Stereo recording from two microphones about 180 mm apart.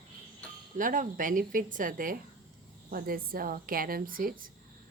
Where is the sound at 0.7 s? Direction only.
50° right (ahead or behind).